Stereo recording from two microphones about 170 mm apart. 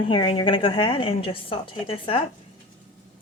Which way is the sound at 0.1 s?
30° left (ahead or behind).